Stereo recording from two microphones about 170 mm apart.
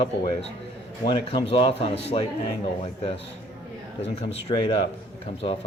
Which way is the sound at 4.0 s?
35° left (ahead or behind).